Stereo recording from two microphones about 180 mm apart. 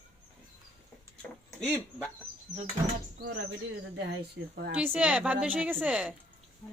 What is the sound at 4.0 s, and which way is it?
Speech, 65° right (ahead or behind).